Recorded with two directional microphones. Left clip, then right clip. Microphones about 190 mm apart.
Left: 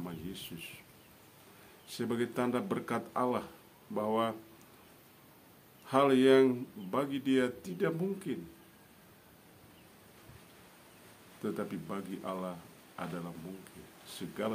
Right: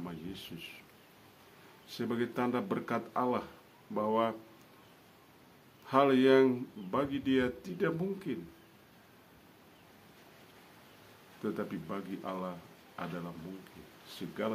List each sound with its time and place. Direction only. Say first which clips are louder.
0.0 s a sound: even; 5° left (ahead or behind)
1.9 s speech: even; 5° left (ahead or behind)
5.9 s speech: even; 5° left (ahead or behind)
11.4 s speech: even; 5° left (ahead or behind)